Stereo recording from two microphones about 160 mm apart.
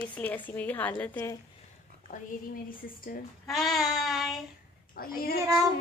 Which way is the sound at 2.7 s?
60° left (ahead or behind).